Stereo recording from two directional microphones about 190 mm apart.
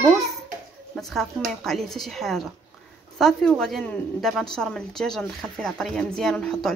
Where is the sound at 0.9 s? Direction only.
Centre (ahead or behind).